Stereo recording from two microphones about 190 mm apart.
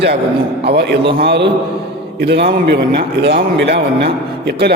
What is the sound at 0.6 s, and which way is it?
A man's voice, 60° right (ahead or behind).